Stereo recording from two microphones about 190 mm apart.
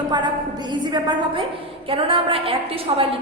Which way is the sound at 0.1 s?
25° right (ahead or behind).